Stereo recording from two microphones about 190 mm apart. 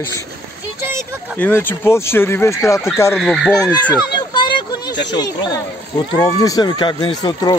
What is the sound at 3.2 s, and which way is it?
Speech, 5° left (ahead or behind).